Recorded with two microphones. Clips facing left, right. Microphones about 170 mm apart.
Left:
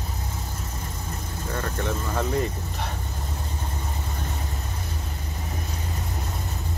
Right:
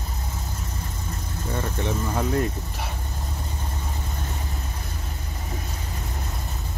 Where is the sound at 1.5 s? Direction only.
15° right (ahead or behind).